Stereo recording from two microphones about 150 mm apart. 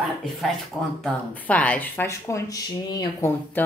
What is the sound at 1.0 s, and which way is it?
Speech, 10° left (ahead or behind).